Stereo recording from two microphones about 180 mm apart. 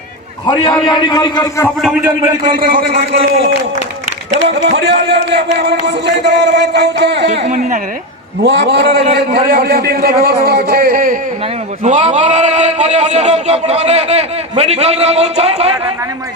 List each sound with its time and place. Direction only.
0.9 s a man's voice: 25° left (ahead or behind)
2.0 s a man's voice: 15° right (ahead or behind)
4.4 s speech: 80° right
8.4 s a man's voice: 75° right (ahead or behind); by 11.2 s 55° right (ahead or behind)
11.8 s a man's voice: 40° right (ahead or behind)